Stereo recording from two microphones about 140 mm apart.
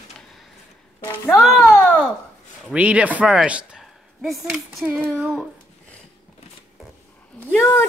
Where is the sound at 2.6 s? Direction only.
10° right (ahead or behind).